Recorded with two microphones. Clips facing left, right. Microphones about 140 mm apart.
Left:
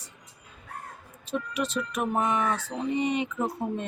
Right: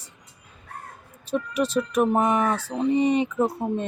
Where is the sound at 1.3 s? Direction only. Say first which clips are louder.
Right 6 dB; 40° right (ahead or behind).